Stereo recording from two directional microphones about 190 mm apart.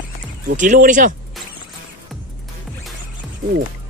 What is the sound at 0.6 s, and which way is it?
Speech, 40° right (ahead or behind).